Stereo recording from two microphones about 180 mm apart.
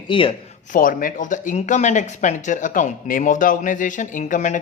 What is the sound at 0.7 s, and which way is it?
Speech, 50° left (ahead or behind).